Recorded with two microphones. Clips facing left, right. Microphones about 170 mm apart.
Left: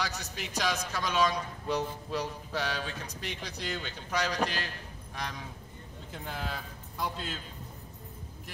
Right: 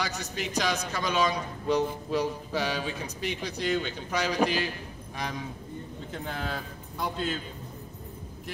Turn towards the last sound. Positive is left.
turn(degrees=0)  # may be behind; listen again after turning